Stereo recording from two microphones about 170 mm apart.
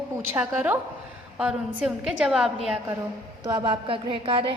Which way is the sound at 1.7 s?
5° right (ahead or behind).